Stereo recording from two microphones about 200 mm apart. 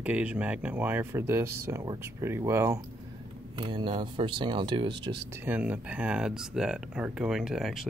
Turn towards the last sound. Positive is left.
turn(degrees=0)  # may be behind; listen again after turning